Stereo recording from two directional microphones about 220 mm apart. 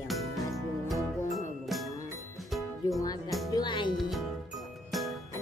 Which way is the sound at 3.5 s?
20° left (ahead or behind).